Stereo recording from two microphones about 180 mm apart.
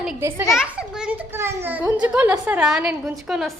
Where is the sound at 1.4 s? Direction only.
15° right (ahead or behind).